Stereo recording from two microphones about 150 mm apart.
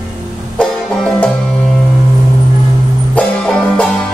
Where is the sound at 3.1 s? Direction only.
5° left (ahead or behind).